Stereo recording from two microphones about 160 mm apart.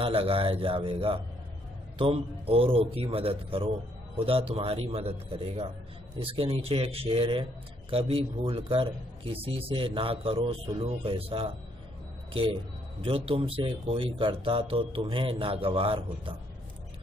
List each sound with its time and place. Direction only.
0.0 s a man's voice: 35° right (ahead or behind)
13.0 s a man's voice: 35° right (ahead or behind)